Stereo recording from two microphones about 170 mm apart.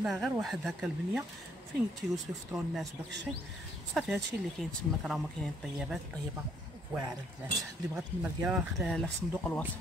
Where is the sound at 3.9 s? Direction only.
Centre (ahead or behind).